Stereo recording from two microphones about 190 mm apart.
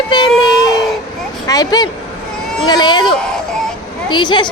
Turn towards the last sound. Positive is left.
turn(degrees=25)  # may be behind; listen again after turning